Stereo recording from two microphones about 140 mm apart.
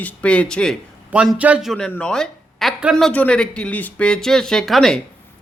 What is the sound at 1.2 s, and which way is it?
Speech, 10° right (ahead or behind).